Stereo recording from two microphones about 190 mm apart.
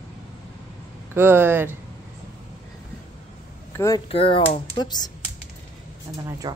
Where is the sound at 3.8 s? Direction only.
15° left (ahead or behind).